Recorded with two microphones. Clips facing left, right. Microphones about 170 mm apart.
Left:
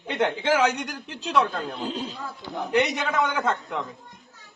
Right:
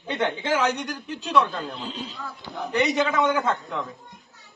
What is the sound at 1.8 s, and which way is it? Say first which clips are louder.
Speech: left 3 dB; 45° left (ahead or behind).